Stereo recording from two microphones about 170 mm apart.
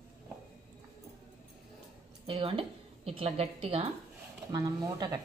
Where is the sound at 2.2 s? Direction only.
30° right (ahead or behind).